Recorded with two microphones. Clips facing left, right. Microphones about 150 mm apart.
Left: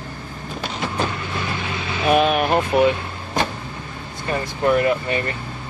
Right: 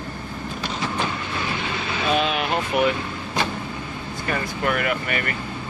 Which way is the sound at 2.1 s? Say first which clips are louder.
Left 6 dB; 50° left (ahead or behind).